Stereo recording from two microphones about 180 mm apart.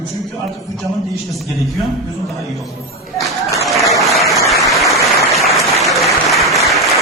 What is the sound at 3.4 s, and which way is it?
Applause, 15° left (ahead or behind).